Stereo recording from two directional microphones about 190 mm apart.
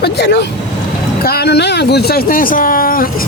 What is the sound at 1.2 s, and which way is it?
Speech, 55° left (ahead or behind).